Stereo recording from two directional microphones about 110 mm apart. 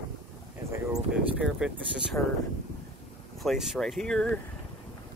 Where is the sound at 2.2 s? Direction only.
15° left (ahead or behind).